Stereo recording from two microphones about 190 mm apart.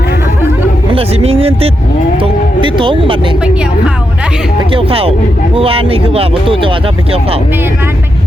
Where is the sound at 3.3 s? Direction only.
5° right (ahead or behind).